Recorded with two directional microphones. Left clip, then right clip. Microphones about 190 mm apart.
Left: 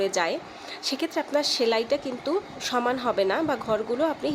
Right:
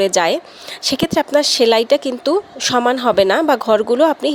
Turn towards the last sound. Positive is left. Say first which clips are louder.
# right 12 dB
turn(degrees=-40)  # may be behind; listen again after turning